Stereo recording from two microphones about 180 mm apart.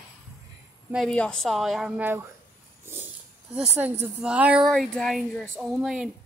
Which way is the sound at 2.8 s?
10° right (ahead or behind).